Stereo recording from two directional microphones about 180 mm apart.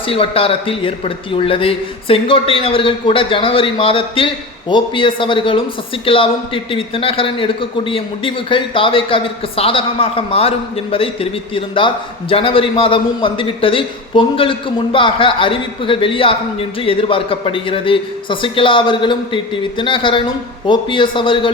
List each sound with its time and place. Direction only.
0.1 s a man's voice: 30° left (ahead or behind)